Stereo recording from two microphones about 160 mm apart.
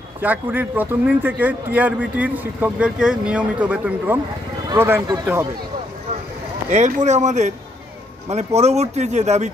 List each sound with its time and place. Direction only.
0.2 s a man's voice: 10° right (ahead or behind)
5.0 s speech: 25° right (ahead or behind)
6.7 s speech: 45° right (ahead or behind)
8.5 s speech: 40° right (ahead or behind)